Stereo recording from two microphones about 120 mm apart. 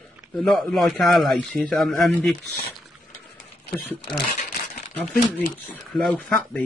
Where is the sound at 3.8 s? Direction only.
15° left (ahead or behind).